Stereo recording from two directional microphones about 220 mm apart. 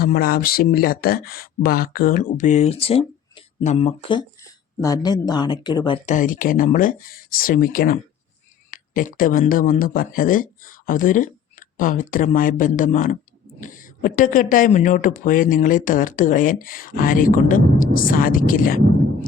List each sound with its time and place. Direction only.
0.0 s speech: 45° left (ahead or behind); by 6.0 s 20° left (ahead or behind)
6.1 s speech: 35° left (ahead or behind)